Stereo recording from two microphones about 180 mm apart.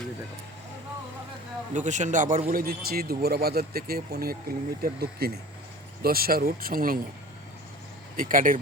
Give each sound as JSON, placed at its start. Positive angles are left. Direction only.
{"t": 1.7, "sound": "a man's voice", "side_deg": -40}
{"t": 8.1, "sound": "speech", "side_deg": -50}